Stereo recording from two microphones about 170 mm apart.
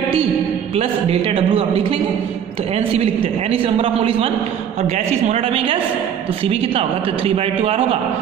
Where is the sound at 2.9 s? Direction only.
35° right (ahead or behind).